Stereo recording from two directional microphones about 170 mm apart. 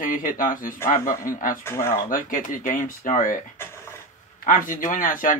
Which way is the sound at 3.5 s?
15° left (ahead or behind).